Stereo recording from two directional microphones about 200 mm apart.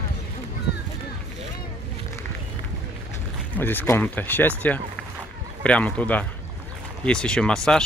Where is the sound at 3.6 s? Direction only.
10° left (ahead or behind).